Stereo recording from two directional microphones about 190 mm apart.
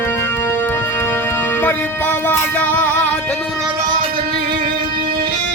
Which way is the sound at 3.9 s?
50° right (ahead or behind).